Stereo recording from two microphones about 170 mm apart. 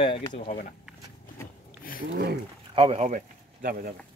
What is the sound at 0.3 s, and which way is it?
Speech, 50° left (ahead or behind).